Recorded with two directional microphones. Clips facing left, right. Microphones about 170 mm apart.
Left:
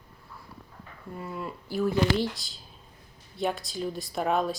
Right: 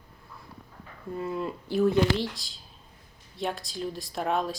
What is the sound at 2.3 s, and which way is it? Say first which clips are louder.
Speech: left 1 dB; centre (ahead or behind).